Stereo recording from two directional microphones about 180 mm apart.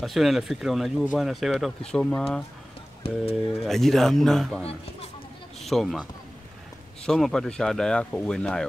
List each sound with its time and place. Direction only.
0.0 s speech: centre (ahead or behind)
3.0 s speech: 30° left (ahead or behind)
3.5 s speech: centre (ahead or behind)
7.1 s speech: centre (ahead or behind)